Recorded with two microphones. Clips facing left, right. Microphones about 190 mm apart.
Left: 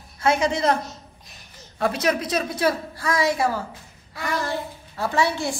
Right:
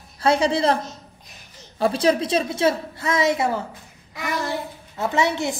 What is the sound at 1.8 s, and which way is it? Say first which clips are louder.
A woman's voice: right 3 dB; 30° right (ahead or behind).